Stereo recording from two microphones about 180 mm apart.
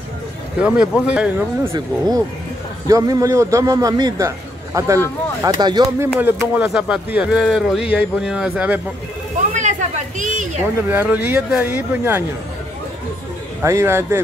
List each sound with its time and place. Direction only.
0.6 s speech: 5° right (ahead or behind)
1.7 s a man's voice: 20° right (ahead or behind)
6.1 s speech: 10° right (ahead or behind)
9.5 s a sound: 40° right (ahead or behind)
10.9 s speech: 10° right (ahead or behind)
13.6 s speech: 15° right (ahead or behind)